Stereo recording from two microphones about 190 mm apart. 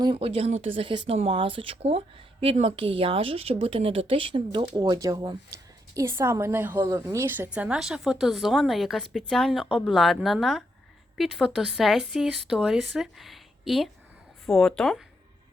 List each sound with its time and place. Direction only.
0.0 s a woman's voice: 25° right (ahead or behind); by 15.0 s centre (ahead or behind)